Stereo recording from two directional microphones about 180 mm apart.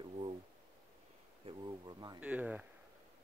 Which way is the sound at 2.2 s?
10° right (ahead or behind).